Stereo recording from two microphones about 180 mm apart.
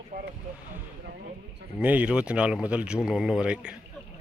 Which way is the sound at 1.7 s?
10° right (ahead or behind).